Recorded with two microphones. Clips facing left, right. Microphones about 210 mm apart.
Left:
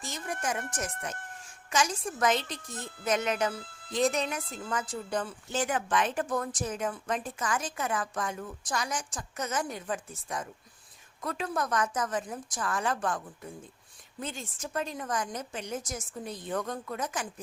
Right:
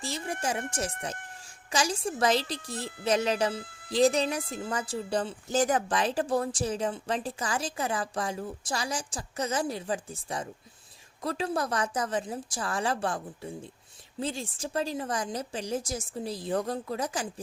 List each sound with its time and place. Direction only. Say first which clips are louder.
0.0 s speech: right 2 dB; 30° right (ahead or behind)
1.0 s a sound: right 2 dB; 30° right (ahead or behind)
1.7 s a woman's voice: right 1 dB; 30° right (ahead or behind)